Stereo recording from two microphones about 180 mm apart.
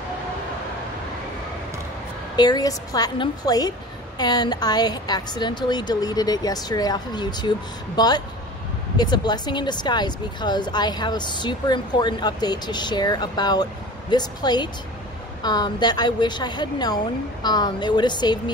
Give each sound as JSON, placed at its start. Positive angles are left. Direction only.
{"t": 2.3, "sound": "speech", "side_deg": 20}